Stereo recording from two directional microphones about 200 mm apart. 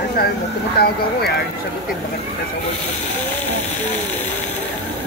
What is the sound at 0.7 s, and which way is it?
Speech, 50° left (ahead or behind).